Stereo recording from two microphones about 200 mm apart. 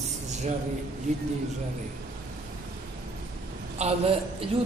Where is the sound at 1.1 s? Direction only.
35° right (ahead or behind).